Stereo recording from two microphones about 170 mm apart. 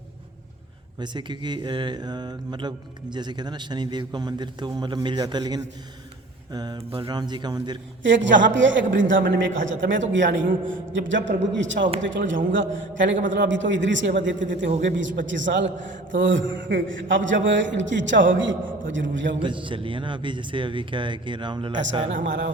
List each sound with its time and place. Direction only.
0.9 s speech: 25° right (ahead or behind)
8.0 s a man's voice: 90° right
19.4 s speech: 30° right (ahead or behind)
22.1 s a man's voice: 90° right